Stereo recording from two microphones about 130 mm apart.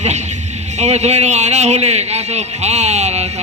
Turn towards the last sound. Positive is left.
turn(degrees=-55)  # may be behind; listen again after turning